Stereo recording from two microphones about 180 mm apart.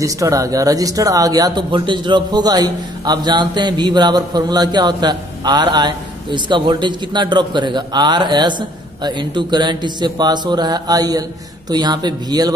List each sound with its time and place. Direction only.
0.0 s speech: 20° right (ahead or behind)